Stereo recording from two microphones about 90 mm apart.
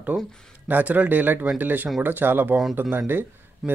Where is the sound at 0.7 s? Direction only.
20° right (ahead or behind).